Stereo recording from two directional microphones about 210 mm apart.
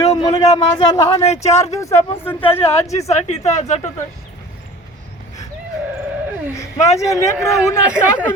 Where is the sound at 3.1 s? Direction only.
30° left (ahead or behind).